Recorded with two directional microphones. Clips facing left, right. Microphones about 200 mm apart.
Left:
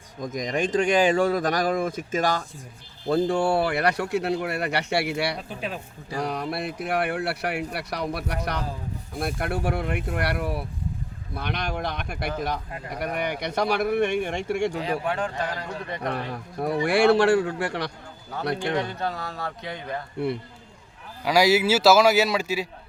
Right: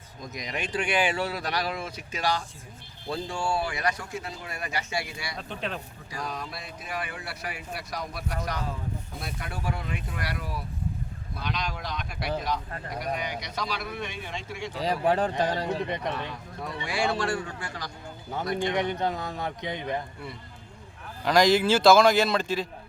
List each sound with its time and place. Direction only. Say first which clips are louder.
0.2 s speech: left 9 dB; 45° left (ahead or behind); by 5.4 s 70° left (ahead or behind)
5.4 s speech: left 1 dB; 5° left (ahead or behind)
6.1 s speech: left 8 dB; 65° left (ahead or behind)
14.8 s speech: right 2 dB; 35° right (ahead or behind)
16.3 s speech: left 9 dB; 55° left (ahead or behind)
16.8 s speech: left 10 dB; 70° left (ahead or behind)
18.5 s speech: right 1 dB; 20° right (ahead or behind)
21.2 s speech: left 1 dB; 10° left (ahead or behind)